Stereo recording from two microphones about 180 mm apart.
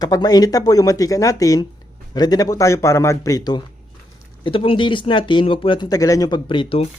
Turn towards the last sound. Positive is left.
turn(degrees=30)  # may be behind; listen again after turning